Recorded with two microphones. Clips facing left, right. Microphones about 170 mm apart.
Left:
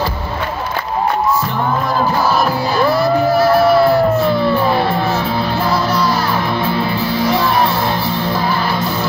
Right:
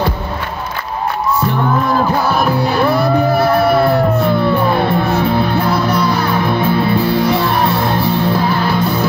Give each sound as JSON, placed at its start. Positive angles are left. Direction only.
{"t": 2.2, "sound": "music", "side_deg": -60}